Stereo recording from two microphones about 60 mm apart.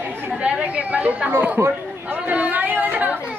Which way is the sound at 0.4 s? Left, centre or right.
Right.